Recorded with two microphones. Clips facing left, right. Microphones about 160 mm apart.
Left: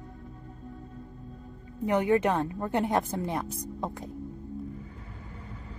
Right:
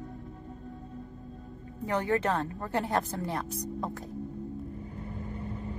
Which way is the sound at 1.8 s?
20° left (ahead or behind).